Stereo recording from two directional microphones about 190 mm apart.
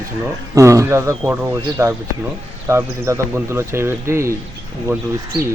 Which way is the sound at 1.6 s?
20° right (ahead or behind).